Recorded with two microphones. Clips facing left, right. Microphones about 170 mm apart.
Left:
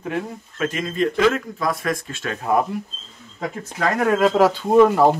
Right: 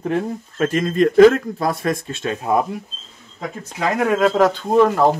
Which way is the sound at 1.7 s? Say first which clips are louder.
Right 1 dB; 30° right (ahead or behind).